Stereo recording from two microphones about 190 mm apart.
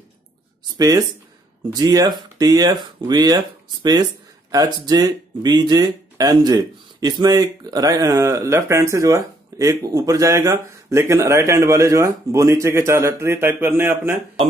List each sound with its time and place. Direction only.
0.7 s speech: 20° right (ahead or behind)